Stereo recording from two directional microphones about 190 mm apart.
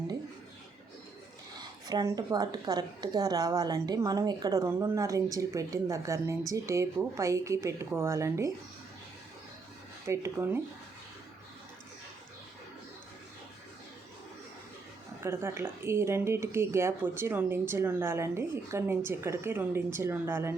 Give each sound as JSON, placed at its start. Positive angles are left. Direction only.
{"t": 1.9, "sound": "a woman's voice", "side_deg": -20}
{"t": 10.1, "sound": "speech", "side_deg": -15}
{"t": 15.2, "sound": "speech", "side_deg": -10}